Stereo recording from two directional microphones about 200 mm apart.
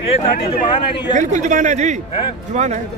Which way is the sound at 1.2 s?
40° right (ahead or behind).